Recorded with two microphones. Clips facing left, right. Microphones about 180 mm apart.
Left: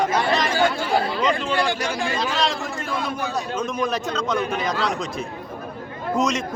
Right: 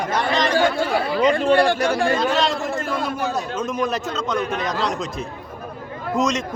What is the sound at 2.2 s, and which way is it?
A man's voice, centre (ahead or behind).